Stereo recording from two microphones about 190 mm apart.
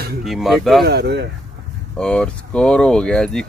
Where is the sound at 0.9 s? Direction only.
60° right (ahead or behind).